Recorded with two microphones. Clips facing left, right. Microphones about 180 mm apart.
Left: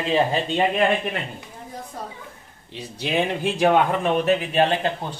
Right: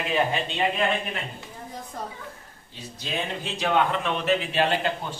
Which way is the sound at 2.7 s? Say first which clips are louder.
Left 8 dB; 70° left (ahead or behind).